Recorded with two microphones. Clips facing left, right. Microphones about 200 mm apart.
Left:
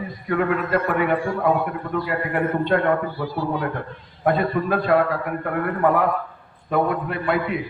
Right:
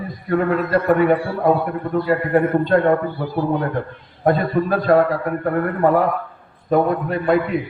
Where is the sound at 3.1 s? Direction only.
55° right (ahead or behind).